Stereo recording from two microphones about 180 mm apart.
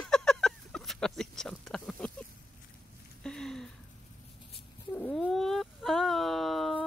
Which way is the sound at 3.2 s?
5° left (ahead or behind).